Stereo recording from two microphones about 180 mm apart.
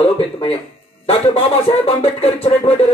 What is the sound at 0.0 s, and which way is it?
Speech, 30° left (ahead or behind).